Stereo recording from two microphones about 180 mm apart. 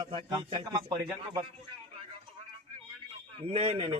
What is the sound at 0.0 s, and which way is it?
Speech, 25° right (ahead or behind).